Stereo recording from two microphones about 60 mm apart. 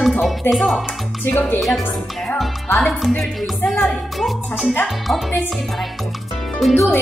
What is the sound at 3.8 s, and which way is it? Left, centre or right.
Music, centre.